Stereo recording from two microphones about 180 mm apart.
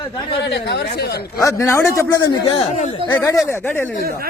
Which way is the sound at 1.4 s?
15° left (ahead or behind).